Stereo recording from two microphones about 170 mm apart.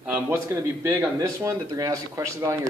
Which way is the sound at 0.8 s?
15° right (ahead or behind).